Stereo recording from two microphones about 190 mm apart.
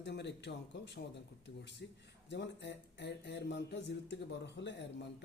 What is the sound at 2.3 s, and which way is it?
Speech, 65° left (ahead or behind).